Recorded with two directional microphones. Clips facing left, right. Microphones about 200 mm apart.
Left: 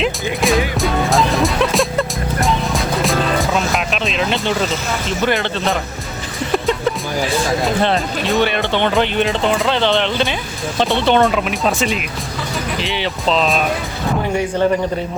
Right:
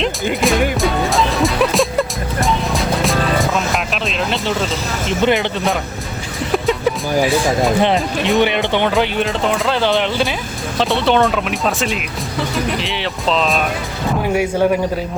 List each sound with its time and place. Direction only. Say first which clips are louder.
0.4 s music: even; centre (ahead or behind)
3.9 s speech: left 1 dB; centre (ahead or behind)
5.2 s speech: right 3 dB; 15° right (ahead or behind)
6.5 s music: right 1 dB; centre (ahead or behind)
7.2 s speech: right 5 dB; 15° right (ahead or behind)
8.9 s speech: left 1 dB; centre (ahead or behind)